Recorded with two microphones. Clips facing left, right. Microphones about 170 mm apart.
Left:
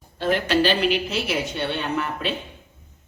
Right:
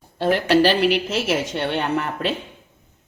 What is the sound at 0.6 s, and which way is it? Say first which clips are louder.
A woman's voice: right 3 dB; 75° right (ahead or behind).